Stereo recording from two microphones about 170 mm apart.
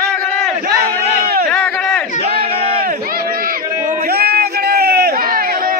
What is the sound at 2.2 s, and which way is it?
Crowd, 35° right (ahead or behind).